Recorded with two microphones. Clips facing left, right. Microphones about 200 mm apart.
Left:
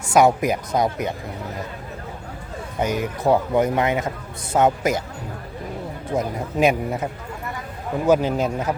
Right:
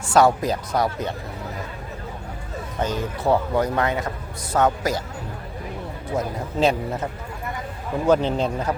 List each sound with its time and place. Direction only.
0.2 s speech: 20° left (ahead or behind)
2.7 s speech: 15° left (ahead or behind)
6.1 s a man's voice: 15° left (ahead or behind)